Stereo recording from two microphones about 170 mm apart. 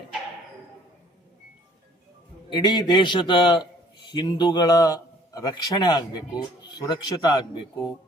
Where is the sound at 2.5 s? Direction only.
25° left (ahead or behind).